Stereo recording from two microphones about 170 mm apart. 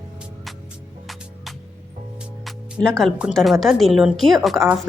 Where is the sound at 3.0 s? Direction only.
Centre (ahead or behind).